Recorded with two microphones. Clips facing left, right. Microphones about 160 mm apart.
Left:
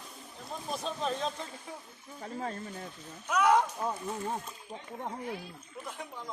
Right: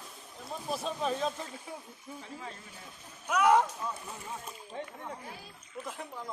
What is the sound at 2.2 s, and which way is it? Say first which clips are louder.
Speech: left 9 dB; 45° left (ahead or behind).